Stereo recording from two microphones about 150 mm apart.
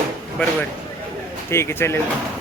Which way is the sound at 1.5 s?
15° left (ahead or behind).